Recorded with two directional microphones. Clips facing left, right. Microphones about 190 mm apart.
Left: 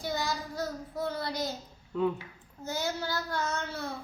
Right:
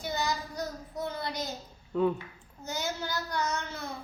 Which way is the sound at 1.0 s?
20° right (ahead or behind).